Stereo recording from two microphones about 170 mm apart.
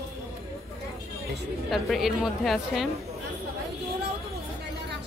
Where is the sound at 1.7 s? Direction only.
Centre (ahead or behind).